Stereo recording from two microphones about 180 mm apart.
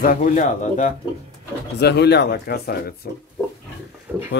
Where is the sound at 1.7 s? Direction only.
70° left (ahead or behind).